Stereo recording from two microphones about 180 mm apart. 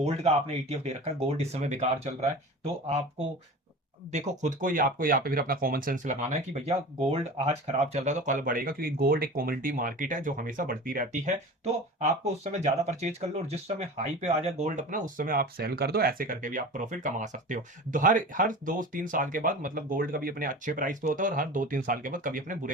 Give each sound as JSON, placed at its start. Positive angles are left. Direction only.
{"t": 0.0, "sound": "speech", "side_deg": -35}